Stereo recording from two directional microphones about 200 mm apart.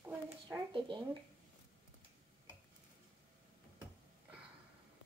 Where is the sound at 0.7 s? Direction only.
25° right (ahead or behind).